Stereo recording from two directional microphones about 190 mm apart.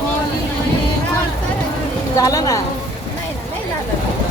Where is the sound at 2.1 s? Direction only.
15° left (ahead or behind).